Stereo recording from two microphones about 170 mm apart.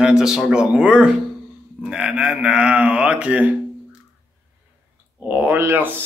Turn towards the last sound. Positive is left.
turn(degrees=-10)  # may be behind; listen again after turning